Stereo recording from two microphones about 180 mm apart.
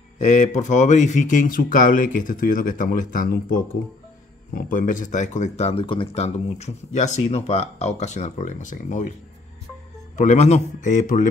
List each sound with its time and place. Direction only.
0.2 s speech: 45° left (ahead or behind)
4.6 s speech: 50° left (ahead or behind)
10.1 s speech: 40° left (ahead or behind)